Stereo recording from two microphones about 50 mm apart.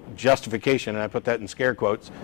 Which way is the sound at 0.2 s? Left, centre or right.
Centre.